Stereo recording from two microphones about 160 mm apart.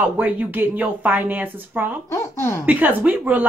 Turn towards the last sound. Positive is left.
turn(degrees=-10)  # may be behind; listen again after turning